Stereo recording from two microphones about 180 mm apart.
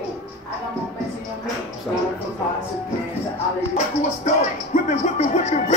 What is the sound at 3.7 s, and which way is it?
Music, 40° left (ahead or behind).